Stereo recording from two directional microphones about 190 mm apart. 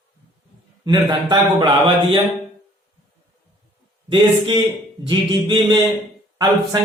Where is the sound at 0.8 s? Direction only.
25° right (ahead or behind).